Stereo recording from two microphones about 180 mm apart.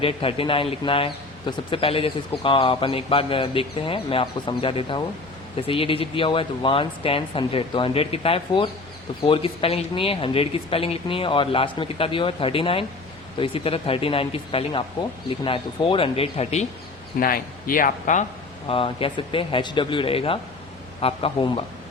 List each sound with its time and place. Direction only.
0.0 s speech: 30° left (ahead or behind)
17.2 s a man's voice: 55° left (ahead or behind)
18.7 s speech: 30° left (ahead or behind)